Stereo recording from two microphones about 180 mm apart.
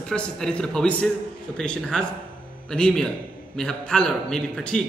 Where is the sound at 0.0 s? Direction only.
5° left (ahead or behind).